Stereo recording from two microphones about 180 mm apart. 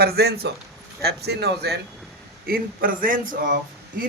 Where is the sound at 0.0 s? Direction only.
60° right (ahead or behind).